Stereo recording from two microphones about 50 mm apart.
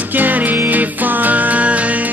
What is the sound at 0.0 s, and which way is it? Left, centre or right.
Music, right.